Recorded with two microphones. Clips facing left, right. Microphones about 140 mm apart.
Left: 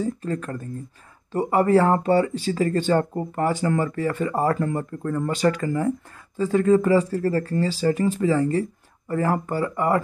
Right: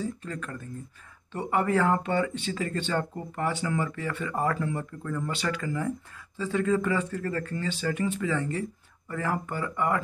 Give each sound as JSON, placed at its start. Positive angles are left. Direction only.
{"t": 0.0, "sound": "speech", "side_deg": 40}